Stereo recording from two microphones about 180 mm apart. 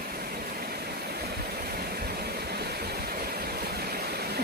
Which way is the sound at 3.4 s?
60° right (ahead or behind).